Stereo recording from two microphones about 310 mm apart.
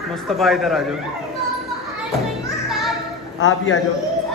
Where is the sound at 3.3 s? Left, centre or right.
Left.